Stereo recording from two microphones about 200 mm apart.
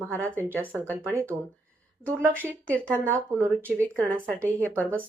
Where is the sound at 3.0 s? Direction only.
10° right (ahead or behind).